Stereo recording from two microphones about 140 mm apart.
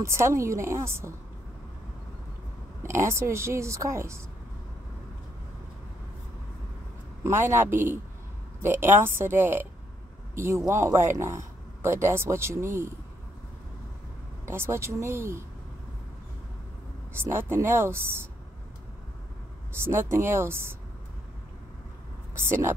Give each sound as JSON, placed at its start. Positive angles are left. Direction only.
{"t": 0.0, "sound": "speech", "side_deg": -20}
{"t": 2.8, "sound": "speech", "side_deg": -20}
{"t": 7.2, "sound": "a man's voice", "side_deg": -20}
{"t": 14.5, "sound": "speech", "side_deg": -20}
{"t": 17.1, "sound": "speech", "side_deg": -15}
{"t": 19.8, "sound": "speech", "side_deg": -15}
{"t": 22.5, "sound": "speech", "side_deg": -20}